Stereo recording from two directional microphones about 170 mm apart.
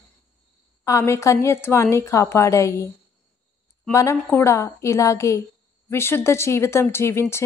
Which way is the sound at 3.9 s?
15° left (ahead or behind).